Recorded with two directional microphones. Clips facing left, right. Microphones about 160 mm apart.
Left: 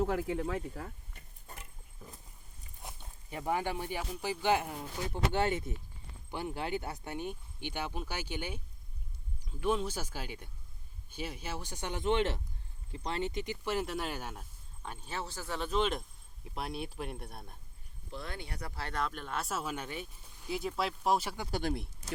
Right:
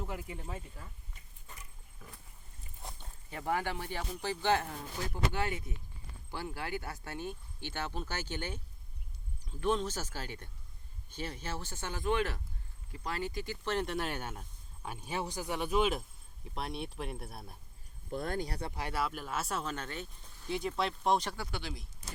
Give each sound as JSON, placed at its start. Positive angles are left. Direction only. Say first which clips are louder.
{"t": 0.0, "sound": "speech", "louder": "left 10 dB", "side_deg": 85}
{"t": 2.0, "sound": "horse", "louder": "left 2 dB", "side_deg": 20}
{"t": 3.2, "sound": "speech", "louder": "left 1 dB", "side_deg": 15}
{"t": 13.7, "sound": "speech", "louder": "right 2 dB", "side_deg": 0}
{"t": 14.8, "sound": "speech", "louder": "right 3 dB", "side_deg": -10}
{"t": 18.1, "sound": "speech", "louder": "right 7 dB", "side_deg": -50}
{"t": 18.7, "sound": "speech", "louder": "left 3 dB", "side_deg": -10}
{"t": 21.5, "sound": "speech", "louder": "left 8 dB", "side_deg": 50}